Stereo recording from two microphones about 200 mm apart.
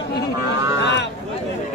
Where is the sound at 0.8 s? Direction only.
60° left (ahead or behind).